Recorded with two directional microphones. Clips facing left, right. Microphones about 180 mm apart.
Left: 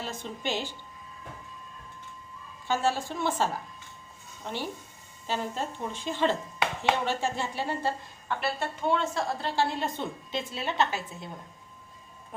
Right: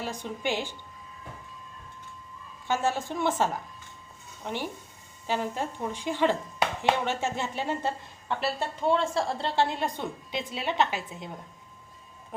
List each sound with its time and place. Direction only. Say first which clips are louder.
0.0 s a woman's voice: right 2 dB; 15° right (ahead or behind)
2.6 s a woman's voice: even; 15° right (ahead or behind)